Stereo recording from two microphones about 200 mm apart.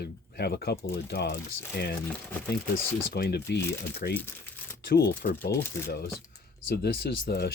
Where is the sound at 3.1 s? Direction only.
55° left (ahead or behind).